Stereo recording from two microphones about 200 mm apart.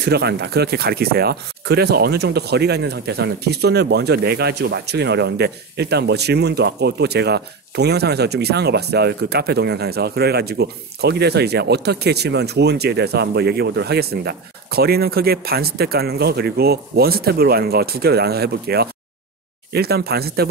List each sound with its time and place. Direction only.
0.0 s speech: 55° right (ahead or behind)